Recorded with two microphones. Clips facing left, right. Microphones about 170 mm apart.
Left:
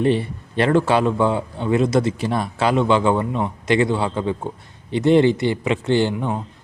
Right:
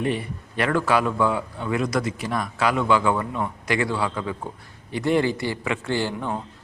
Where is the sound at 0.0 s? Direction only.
30° left (ahead or behind).